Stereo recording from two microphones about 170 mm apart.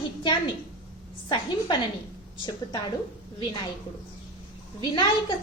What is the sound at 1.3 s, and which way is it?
Speech, 25° left (ahead or behind).